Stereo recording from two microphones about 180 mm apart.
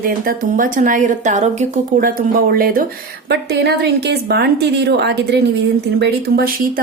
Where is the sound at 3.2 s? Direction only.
65° right (ahead or behind).